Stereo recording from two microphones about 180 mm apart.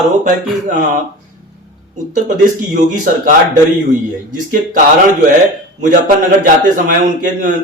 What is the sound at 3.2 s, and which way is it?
A man's voice, 45° right (ahead or behind).